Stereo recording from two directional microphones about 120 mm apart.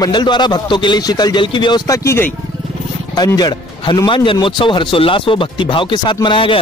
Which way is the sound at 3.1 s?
35° left (ahead or behind).